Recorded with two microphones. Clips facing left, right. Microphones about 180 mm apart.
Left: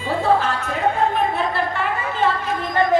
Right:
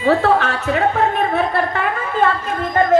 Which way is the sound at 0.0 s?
70° right (ahead or behind).